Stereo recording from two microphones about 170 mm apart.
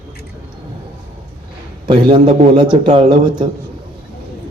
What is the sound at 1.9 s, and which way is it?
Speech, 30° right (ahead or behind).